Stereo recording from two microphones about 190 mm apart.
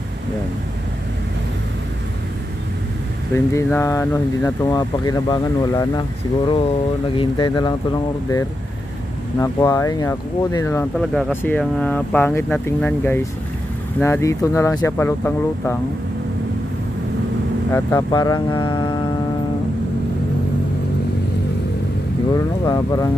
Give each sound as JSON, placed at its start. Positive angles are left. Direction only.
{"t": 3.3, "sound": "speech", "side_deg": 15}
{"t": 9.4, "sound": "speech", "side_deg": 15}
{"t": 11.0, "sound": "speech", "side_deg": 0}
{"t": 17.6, "sound": "speech", "side_deg": 15}
{"t": 22.3, "sound": "speech", "side_deg": 20}